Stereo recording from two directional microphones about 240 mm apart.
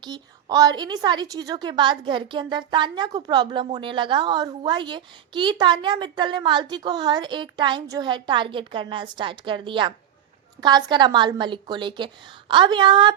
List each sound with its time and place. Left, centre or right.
0.0 s a woman's voice: centre